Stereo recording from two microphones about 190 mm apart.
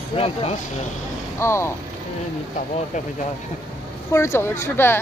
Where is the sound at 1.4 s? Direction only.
15° left (ahead or behind).